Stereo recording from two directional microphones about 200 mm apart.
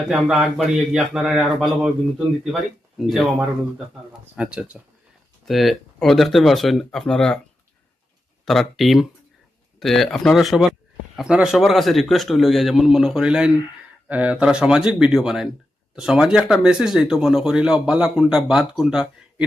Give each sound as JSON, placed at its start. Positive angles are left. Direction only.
{"t": 0.1, "sound": "speech", "side_deg": 0}
{"t": 4.4, "sound": "speech", "side_deg": -5}
{"t": 8.4, "sound": "speech", "side_deg": 0}